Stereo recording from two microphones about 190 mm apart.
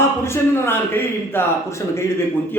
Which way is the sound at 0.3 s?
15° left (ahead or behind).